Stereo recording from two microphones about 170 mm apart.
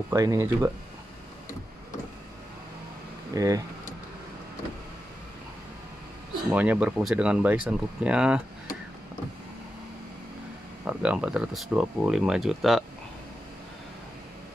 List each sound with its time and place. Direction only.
0.1 s speech: 20° right (ahead or behind)
3.3 s speech: 20° right (ahead or behind)
6.5 s speech: 10° right (ahead or behind)
10.9 s speech: 10° right (ahead or behind)